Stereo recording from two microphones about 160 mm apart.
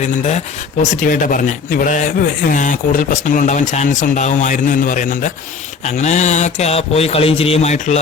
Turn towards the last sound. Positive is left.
turn(degrees=45)  # may be behind; listen again after turning